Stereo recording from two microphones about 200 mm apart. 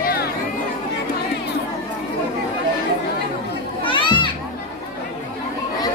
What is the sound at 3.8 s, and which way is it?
Children playing, 25° left (ahead or behind).